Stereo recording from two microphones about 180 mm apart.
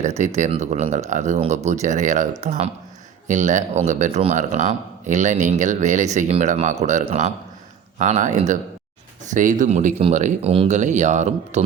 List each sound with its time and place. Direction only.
0.0 s speech: 40° right (ahead or behind)